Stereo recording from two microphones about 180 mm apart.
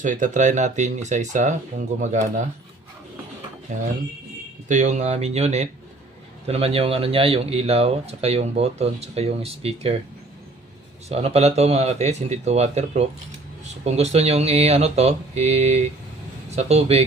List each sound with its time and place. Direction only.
0.0 s speech: 45° right (ahead or behind)
3.7 s speech: 45° right (ahead or behind)
11.1 s speech: 35° right (ahead or behind)